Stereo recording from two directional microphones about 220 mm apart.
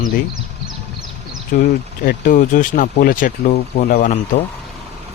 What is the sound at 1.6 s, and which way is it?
Speech, 40° left (ahead or behind).